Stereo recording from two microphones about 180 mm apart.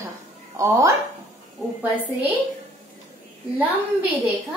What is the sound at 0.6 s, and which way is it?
Speech, 15° right (ahead or behind).